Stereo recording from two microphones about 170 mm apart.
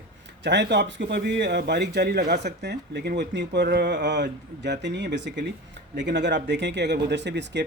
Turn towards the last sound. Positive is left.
turn(degrees=-90)